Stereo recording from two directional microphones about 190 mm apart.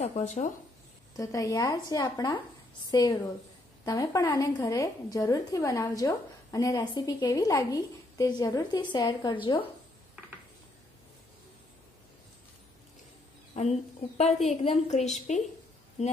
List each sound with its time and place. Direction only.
0.0 s a woman's voice: 35° left (ahead or behind)
1.1 s a woman's voice: 15° left (ahead or behind)
13.6 s a woman's voice: 35° left (ahead or behind)